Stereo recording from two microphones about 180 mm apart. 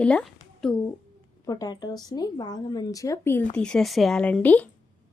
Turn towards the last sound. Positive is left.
turn(degrees=10)  # may be behind; listen again after turning